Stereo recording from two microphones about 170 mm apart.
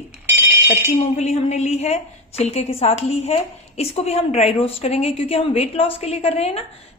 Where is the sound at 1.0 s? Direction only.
40° left (ahead or behind).